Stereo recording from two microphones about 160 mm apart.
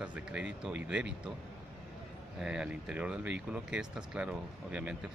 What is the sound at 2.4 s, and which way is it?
Speech, 5° right (ahead or behind).